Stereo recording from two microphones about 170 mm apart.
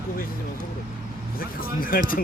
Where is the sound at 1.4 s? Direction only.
60° left (ahead or behind).